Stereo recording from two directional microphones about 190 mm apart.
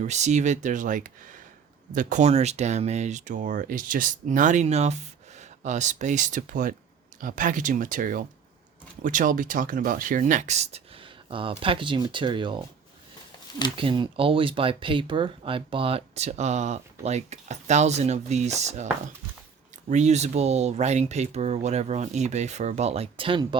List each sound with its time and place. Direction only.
0.0 s speech: 40° right (ahead or behind)
13.7 s speech: 25° right (ahead or behind)
19.9 s speech: 35° right (ahead or behind)